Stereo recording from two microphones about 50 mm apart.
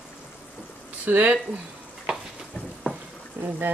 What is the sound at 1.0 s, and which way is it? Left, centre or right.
Speech, right.